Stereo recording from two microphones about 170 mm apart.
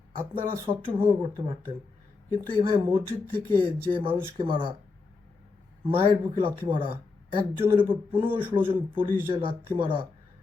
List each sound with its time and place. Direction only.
0.6 s speech: 30° right (ahead or behind)
5.8 s speech: 30° right (ahead or behind)